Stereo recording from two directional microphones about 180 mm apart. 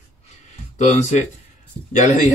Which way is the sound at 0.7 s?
40° left (ahead or behind).